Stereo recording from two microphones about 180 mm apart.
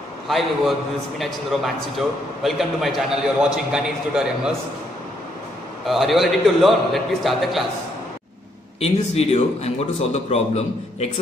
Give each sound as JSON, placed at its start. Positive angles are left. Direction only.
{"t": 0.3, "sound": "a man's voice", "side_deg": 0}
{"t": 5.9, "sound": "a man's voice", "side_deg": 0}
{"t": 8.8, "sound": "a man's voice", "side_deg": 35}